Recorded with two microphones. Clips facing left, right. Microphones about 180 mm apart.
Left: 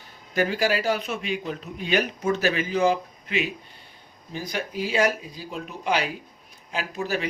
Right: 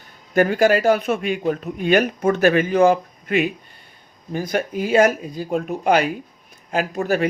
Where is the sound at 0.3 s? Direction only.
50° right (ahead or behind).